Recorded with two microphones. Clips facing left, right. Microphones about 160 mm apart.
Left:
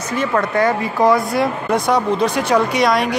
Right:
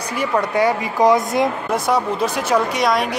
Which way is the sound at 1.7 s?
5° right (ahead or behind).